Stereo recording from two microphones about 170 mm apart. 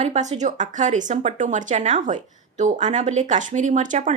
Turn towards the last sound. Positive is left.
turn(degrees=-45)  # may be behind; listen again after turning